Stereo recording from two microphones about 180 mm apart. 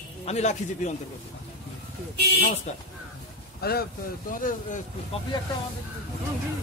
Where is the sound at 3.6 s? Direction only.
60° left (ahead or behind).